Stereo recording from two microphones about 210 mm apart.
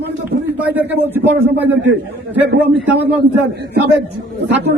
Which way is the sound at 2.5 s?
60° right (ahead or behind).